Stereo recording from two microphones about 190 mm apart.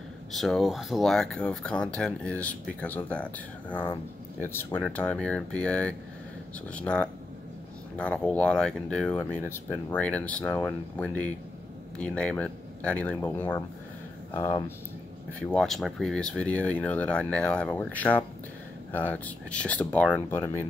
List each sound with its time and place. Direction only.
0.3 s speech: centre (ahead or behind); by 14.6 s 20° left (ahead or behind)
15.4 s speech: centre (ahead or behind)